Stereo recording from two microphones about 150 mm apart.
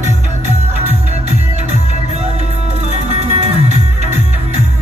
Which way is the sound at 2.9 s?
45° right (ahead or behind).